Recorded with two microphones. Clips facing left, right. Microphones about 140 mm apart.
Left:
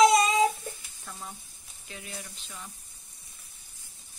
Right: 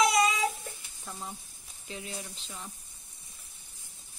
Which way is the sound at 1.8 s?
25° right (ahead or behind).